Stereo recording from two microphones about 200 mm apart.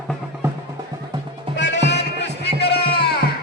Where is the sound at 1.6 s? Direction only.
60° left (ahead or behind).